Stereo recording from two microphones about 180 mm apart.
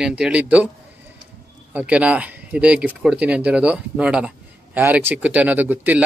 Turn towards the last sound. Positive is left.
turn(degrees=-10)  # may be behind; listen again after turning